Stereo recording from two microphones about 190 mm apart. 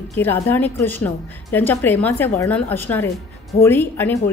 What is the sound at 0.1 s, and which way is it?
A woman's voice, 10° left (ahead or behind).